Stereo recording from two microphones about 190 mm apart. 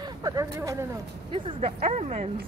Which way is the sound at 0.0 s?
20° right (ahead or behind).